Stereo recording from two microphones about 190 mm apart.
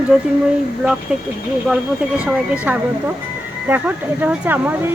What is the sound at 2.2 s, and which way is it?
Speech, 5° right (ahead or behind).